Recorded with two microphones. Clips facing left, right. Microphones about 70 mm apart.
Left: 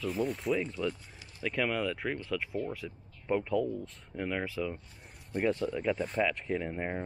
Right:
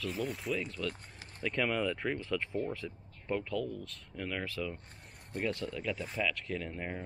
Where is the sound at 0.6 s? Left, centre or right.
Centre.